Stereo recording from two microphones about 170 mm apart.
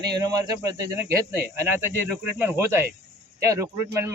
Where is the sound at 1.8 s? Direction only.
10° right (ahead or behind).